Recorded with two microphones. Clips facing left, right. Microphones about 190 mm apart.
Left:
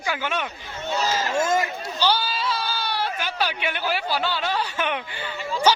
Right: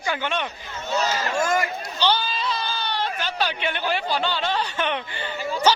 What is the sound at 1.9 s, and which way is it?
Sheep, 10° left (ahead or behind).